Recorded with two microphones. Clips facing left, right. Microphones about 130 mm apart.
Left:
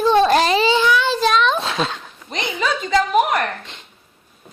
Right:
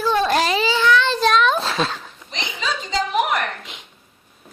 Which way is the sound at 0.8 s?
10° left (ahead or behind).